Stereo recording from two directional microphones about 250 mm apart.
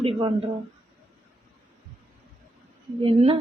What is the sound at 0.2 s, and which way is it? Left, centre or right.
Speech, centre.